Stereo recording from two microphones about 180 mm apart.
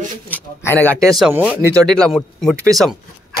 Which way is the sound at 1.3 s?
10° right (ahead or behind).